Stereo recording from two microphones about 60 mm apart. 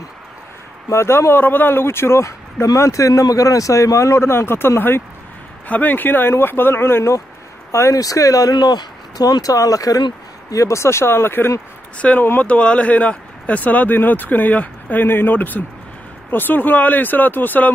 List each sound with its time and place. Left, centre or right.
0.8 s a man's voice: left
5.7 s a man's voice: left
7.9 s speech: left
10.5 s a man's voice: left
12.4 s speech: left